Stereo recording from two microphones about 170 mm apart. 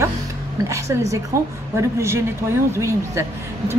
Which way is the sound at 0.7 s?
15° right (ahead or behind).